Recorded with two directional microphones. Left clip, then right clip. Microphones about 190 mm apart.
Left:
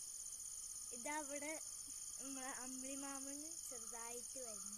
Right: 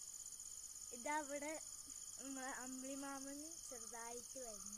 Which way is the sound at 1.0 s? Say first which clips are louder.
Right 2 dB; 25° right (ahead or behind).